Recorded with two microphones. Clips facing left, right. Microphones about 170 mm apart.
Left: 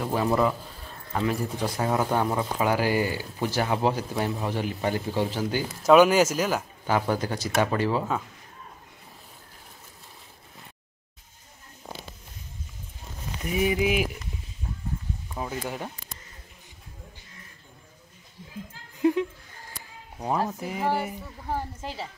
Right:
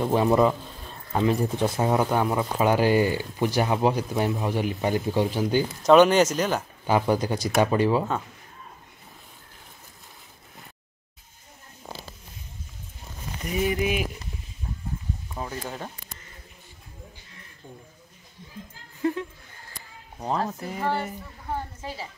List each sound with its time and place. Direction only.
0.1 s speech: 25° right (ahead or behind)
2.1 s speech: 5° right (ahead or behind)
2.6 s speech: 20° right (ahead or behind)
5.9 s speech: 5° left (ahead or behind)
6.9 s speech: 15° right (ahead or behind)
13.4 s speech: 5° left (ahead or behind)
15.3 s speech: 10° left (ahead or behind)
19.1 s a sound: 15° left (ahead or behind)
20.2 s speech: 5° left (ahead or behind)